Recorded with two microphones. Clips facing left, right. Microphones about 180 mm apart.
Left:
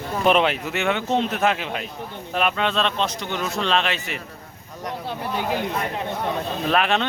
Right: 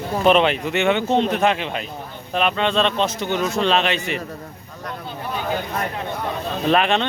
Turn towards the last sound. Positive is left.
turn(degrees=0)  # may be behind; listen again after turning